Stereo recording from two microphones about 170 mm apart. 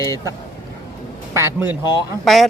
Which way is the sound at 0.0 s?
20° right (ahead or behind).